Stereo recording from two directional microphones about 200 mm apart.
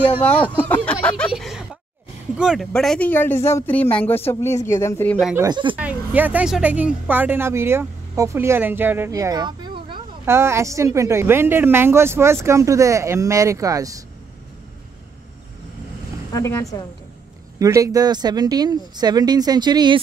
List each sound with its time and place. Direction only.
0.2 s speech: 5° left (ahead or behind)
1.0 s a sound: 5° left (ahead or behind)
2.3 s speech: 5° right (ahead or behind)
5.3 s speech: 20° right (ahead or behind)
5.8 s speech: 10° right (ahead or behind)
16.3 s speech: 15° left (ahead or behind)
17.6 s speech: 15° right (ahead or behind)